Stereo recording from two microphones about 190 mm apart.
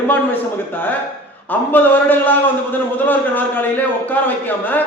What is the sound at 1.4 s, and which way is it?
A man's voice, 10° left (ahead or behind).